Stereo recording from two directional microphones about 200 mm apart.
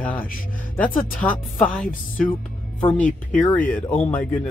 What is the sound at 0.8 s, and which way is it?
Speech, 45° left (ahead or behind).